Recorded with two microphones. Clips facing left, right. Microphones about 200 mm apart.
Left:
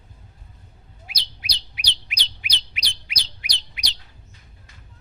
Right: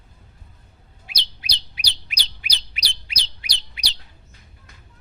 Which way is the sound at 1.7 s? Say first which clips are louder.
Left 1 dB; 35° right (ahead or behind).